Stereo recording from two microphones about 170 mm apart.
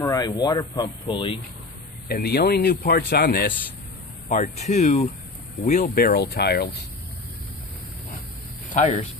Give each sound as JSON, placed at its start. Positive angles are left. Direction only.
{"t": 0.0, "sound": "speech", "side_deg": 20}
{"t": 2.0, "sound": "a man's voice", "side_deg": 65}
{"t": 4.3, "sound": "a man's voice", "side_deg": 40}
{"t": 8.6, "sound": "a sound", "side_deg": 45}